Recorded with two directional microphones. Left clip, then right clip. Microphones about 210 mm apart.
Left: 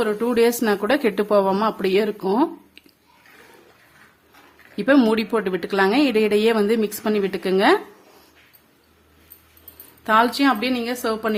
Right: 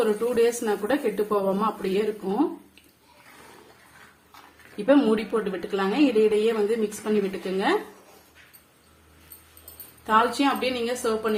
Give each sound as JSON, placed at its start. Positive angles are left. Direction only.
{"t": 0.0, "sound": "speech", "side_deg": 55}
{"t": 4.9, "sound": "speech", "side_deg": 55}
{"t": 10.0, "sound": "speech", "side_deg": 55}